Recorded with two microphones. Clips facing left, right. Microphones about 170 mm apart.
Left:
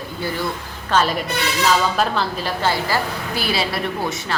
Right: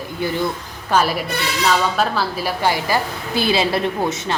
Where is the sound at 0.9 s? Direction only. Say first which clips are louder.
Right 1 dB; 10° right (ahead or behind).